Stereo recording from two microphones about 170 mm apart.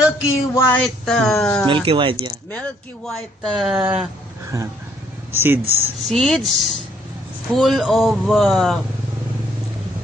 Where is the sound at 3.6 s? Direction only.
5° right (ahead or behind).